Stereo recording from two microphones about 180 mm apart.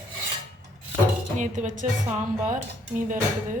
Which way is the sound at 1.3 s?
45° right (ahead or behind).